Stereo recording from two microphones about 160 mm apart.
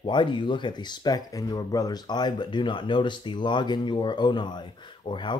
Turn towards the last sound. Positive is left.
turn(degrees=30)  # may be behind; listen again after turning